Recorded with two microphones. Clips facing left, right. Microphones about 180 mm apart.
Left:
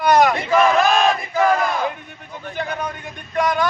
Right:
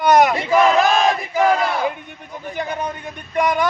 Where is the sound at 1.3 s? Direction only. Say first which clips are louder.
Right 1 dB; 15° right (ahead or behind).